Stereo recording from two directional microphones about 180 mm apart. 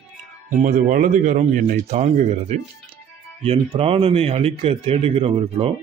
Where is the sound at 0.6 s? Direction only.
45° right (ahead or behind).